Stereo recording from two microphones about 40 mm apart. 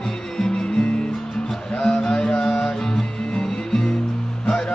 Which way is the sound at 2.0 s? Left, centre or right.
Centre.